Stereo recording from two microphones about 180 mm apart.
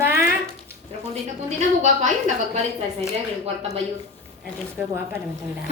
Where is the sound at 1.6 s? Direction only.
40° right (ahead or behind).